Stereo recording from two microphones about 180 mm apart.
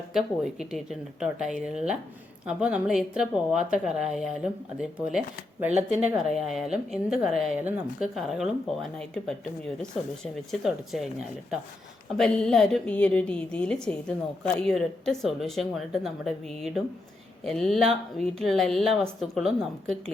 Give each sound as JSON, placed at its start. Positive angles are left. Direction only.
{"t": 0.1, "sound": "a woman's voice", "side_deg": 0}
{"t": 5.7, "sound": "speech", "side_deg": -40}
{"t": 6.1, "sound": "a woman's voice", "side_deg": 0}
{"t": 12.1, "sound": "a woman's voice", "side_deg": 5}